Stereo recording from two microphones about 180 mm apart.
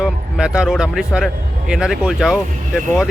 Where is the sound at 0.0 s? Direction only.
5° right (ahead or behind).